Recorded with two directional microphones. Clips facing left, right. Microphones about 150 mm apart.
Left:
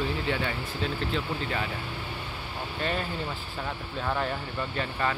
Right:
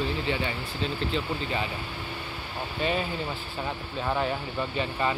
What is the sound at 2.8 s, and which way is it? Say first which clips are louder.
Speech: right 3 dB; 5° right (ahead or behind).